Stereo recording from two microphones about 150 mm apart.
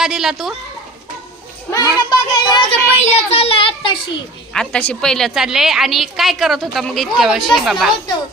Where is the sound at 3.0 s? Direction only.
40° left (ahead or behind).